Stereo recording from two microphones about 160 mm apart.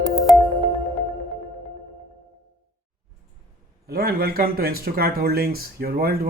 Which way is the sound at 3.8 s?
75° right (ahead or behind).